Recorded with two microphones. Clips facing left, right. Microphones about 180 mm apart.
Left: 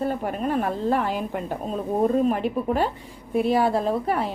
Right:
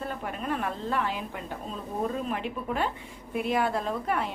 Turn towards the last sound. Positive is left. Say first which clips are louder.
# left 6 dB
turn(degrees=35)  # may be behind; listen again after turning